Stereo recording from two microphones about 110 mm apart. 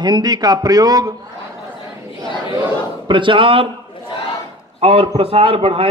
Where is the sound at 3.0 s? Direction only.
50° right (ahead or behind).